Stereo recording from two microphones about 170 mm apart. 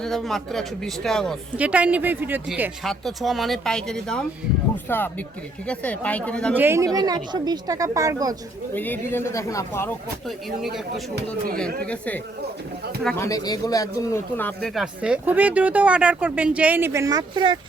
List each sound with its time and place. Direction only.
0.0 s speech: centre (ahead or behind)
1.5 s speech: 10° right (ahead or behind)
2.8 s speech: centre (ahead or behind)
6.6 s a woman's voice: 15° right (ahead or behind)
8.7 s speech: 10° left (ahead or behind)
10.2 s speech: centre (ahead or behind)
13.1 s speech: 20° left (ahead or behind)
14.8 s speech: 5° right (ahead or behind); by 17.6 s 25° right (ahead or behind)